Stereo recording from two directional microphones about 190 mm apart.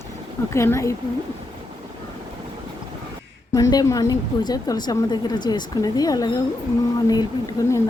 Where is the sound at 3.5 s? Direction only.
20° left (ahead or behind).